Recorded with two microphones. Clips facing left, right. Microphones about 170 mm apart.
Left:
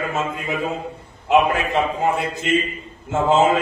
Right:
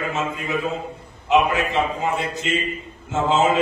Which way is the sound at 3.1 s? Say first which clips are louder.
Left 3 dB; 55° left (ahead or behind).